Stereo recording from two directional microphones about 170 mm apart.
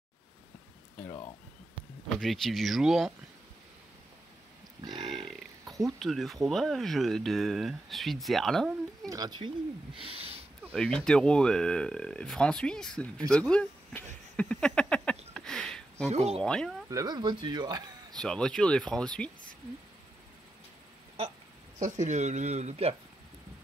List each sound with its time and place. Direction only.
2.1 s speech: centre (ahead or behind)
4.8 s burping: 25° right (ahead or behind)
5.2 s a sound: centre (ahead or behind)
5.9 s speech: centre (ahead or behind)
9.1 s speech: 25° right (ahead or behind)
9.9 s a sound: 35° right (ahead or behind)
10.7 s speech: 5° left (ahead or behind)
13.3 s a sound: 5° left (ahead or behind)
16.1 s speech: 40° right (ahead or behind)
16.4 s speech: 5° left (ahead or behind)
16.9 s speech: 25° right (ahead or behind)
18.1 s speech: 5° left (ahead or behind)
21.7 s speech: 45° right (ahead or behind)